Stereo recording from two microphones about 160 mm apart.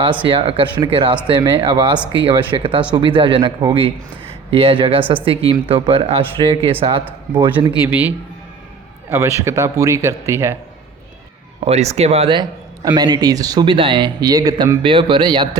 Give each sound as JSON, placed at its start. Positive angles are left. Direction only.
{"t": 0.3, "sound": "speech", "side_deg": -35}
{"t": 7.9, "sound": "a man's voice", "side_deg": -10}
{"t": 11.6, "sound": "speech", "side_deg": -40}